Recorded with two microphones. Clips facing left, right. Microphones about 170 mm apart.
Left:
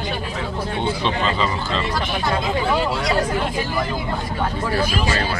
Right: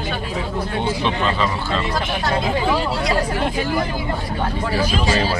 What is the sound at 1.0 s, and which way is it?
Speech, 5° right (ahead or behind).